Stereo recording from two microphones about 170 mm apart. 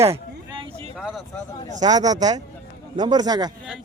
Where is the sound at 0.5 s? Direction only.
30° right (ahead or behind).